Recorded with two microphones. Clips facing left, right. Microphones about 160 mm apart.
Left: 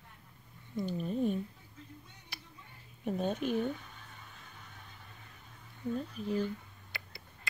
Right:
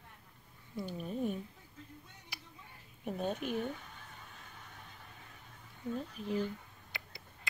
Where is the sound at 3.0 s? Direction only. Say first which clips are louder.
Left 3 dB; 5° right (ahead or behind).